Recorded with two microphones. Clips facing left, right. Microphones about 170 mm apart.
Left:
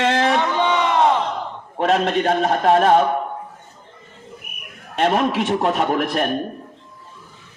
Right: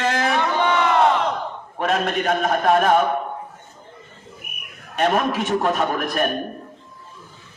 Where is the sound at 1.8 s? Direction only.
30° left (ahead or behind).